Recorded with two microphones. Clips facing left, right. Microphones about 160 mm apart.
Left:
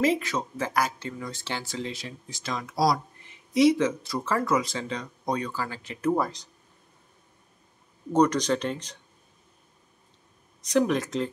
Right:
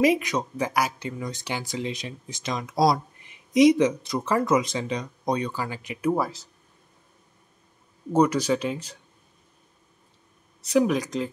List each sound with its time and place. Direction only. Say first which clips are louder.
0.0 s speech: right 3 dB; 15° right (ahead or behind)
8.1 s speech: right 1 dB; 10° right (ahead or behind)
10.7 s speech: right 2 dB; 5° right (ahead or behind)